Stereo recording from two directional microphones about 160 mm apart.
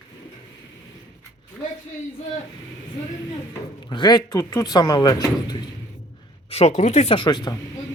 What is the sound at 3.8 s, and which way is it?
Speech, 30° left (ahead or behind).